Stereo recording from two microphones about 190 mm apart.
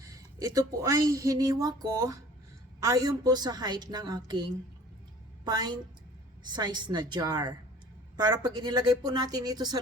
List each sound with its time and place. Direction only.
0.0 s a woman's voice: 15° right (ahead or behind)